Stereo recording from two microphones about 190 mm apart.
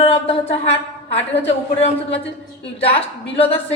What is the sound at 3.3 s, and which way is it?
Speech, 30° left (ahead or behind).